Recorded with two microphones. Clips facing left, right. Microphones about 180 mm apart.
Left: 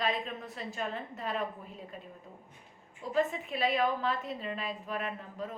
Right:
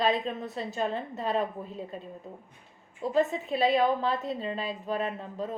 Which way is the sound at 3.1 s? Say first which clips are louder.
Right 4 dB; 30° right (ahead or behind).